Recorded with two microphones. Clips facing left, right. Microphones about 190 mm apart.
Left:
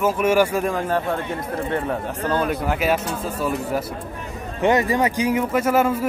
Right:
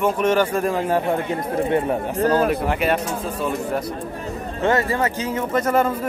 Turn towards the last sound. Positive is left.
turn(degrees=10)  # may be behind; listen again after turning